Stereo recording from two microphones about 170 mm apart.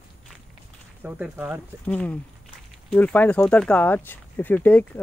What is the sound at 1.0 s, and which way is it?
Speech, 5° right (ahead or behind).